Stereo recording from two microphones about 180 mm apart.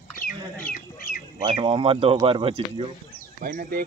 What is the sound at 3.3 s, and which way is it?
Speech, 55° right (ahead or behind).